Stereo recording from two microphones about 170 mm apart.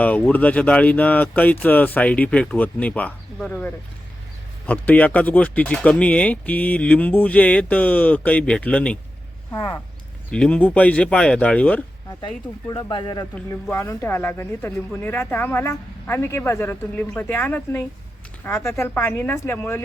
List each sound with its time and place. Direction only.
0.0 s speech: 10° left (ahead or behind)
12.2 s speech: 25° left (ahead or behind)
13.5 s speech: 15° left (ahead or behind)